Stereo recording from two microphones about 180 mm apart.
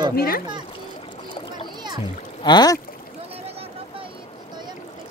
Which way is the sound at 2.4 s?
25° left (ahead or behind).